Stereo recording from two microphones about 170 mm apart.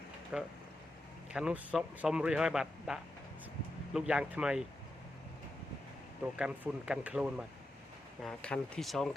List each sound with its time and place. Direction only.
0.3 s speech: 5° right (ahead or behind)
6.3 s speech: 5° right (ahead or behind)
8.2 s speech: 5° left (ahead or behind)